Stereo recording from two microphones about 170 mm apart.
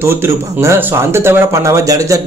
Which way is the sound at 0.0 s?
15° right (ahead or behind).